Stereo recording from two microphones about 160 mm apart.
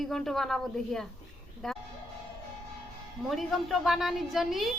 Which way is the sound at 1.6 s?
Centre (ahead or behind).